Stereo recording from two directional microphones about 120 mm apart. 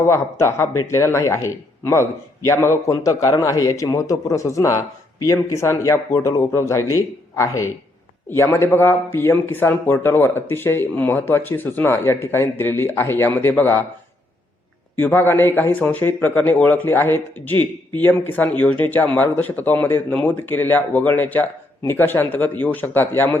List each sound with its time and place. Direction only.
0.0 s speech: 25° left (ahead or behind)
15.0 s speech: 20° left (ahead or behind)